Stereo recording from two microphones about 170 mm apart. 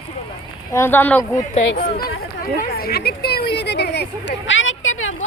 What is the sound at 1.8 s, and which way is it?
Speech, 60° left (ahead or behind).